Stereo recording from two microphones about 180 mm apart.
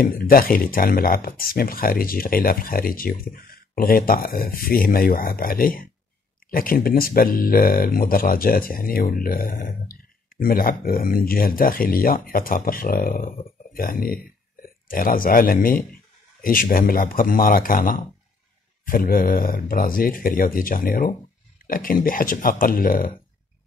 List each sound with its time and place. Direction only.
0.0 s speech: 55° left (ahead or behind)